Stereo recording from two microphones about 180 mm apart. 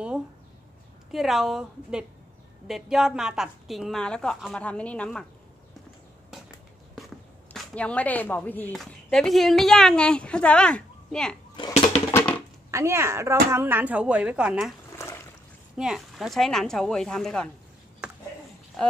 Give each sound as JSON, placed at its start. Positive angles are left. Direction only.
{"t": 1.1, "sound": "a woman's voice", "side_deg": 0}
{"t": 7.5, "sound": "a woman's voice", "side_deg": 5}
{"t": 11.5, "sound": "speech", "side_deg": 30}
{"t": 12.1, "sound": "a sound", "side_deg": 15}
{"t": 12.7, "sound": "a woman's voice", "side_deg": -15}
{"t": 15.0, "sound": "trickle", "side_deg": 15}
{"t": 15.7, "sound": "a woman's voice", "side_deg": -5}